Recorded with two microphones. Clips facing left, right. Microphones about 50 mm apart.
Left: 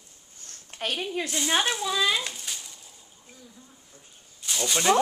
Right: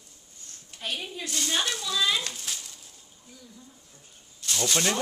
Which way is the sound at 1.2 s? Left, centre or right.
Left.